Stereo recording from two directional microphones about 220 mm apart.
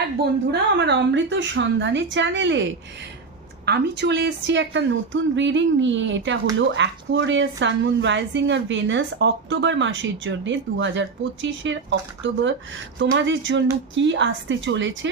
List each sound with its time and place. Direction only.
0.8 s a woman's voice: 55° right (ahead or behind)
3.7 s a woman's voice: 50° right (ahead or behind)